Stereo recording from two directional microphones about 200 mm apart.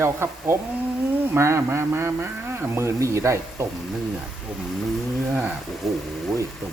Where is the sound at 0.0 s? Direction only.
10° right (ahead or behind).